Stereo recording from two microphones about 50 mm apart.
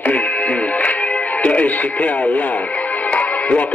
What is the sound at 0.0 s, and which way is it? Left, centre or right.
Music, left.